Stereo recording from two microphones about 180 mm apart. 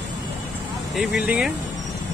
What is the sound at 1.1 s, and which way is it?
Speech, 5° right (ahead or behind).